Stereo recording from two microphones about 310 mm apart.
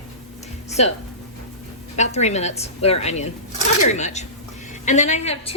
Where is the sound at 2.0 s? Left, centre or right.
Left.